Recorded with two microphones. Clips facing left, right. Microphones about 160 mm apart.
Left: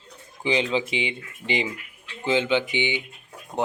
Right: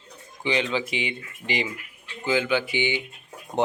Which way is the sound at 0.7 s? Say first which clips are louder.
Left 2 dB; 25° left (ahead or behind).